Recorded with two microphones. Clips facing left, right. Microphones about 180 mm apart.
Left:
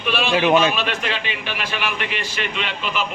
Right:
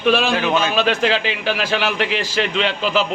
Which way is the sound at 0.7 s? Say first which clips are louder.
Right 7 dB; 90° right.